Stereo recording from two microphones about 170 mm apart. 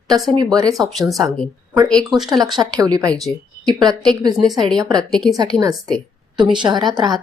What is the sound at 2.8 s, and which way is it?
A woman's voice, 20° right (ahead or behind).